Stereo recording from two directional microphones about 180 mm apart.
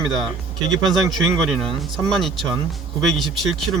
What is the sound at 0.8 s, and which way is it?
Speech, centre (ahead or behind).